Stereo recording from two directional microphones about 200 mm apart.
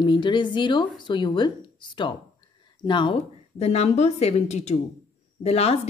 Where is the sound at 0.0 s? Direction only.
25° left (ahead or behind).